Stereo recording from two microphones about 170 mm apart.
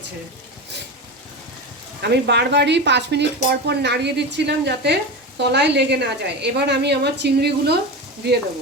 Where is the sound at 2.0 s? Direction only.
80° right.